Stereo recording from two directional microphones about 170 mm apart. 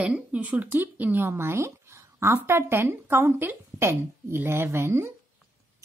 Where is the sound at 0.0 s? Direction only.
10° right (ahead or behind).